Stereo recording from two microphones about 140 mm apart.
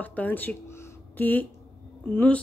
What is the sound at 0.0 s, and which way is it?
A woman's voice, 10° left (ahead or behind).